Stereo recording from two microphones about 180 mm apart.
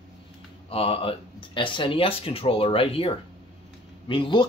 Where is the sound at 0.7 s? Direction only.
30° left (ahead or behind).